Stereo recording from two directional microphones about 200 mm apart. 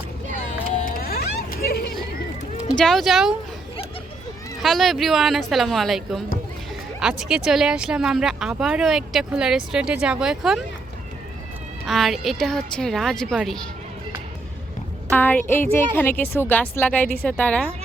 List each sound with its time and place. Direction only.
0.9 s vehicle: 45° left (ahead or behind)
2.7 s speech: centre (ahead or behind)
4.6 s speech: centre (ahead or behind)
11.9 s speech: centre (ahead or behind)
15.1 s a woman's voice: 10° left (ahead or behind)